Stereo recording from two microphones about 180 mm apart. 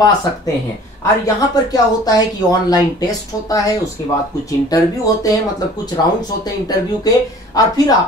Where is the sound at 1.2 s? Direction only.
20° left (ahead or behind).